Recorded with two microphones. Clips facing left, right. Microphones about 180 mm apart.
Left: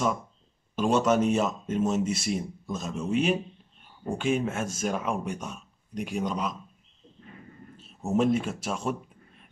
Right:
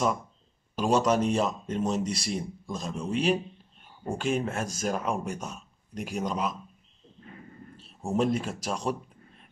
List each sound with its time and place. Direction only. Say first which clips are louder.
0.7 s speech: left 1 dB; centre (ahead or behind)
8.0 s speech: left 2 dB; centre (ahead or behind)